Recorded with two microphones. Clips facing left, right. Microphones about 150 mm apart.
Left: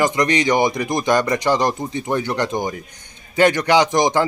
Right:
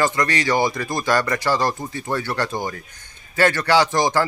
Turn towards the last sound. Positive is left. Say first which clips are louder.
# left 2 dB
turn(degrees=15)  # may be behind; listen again after turning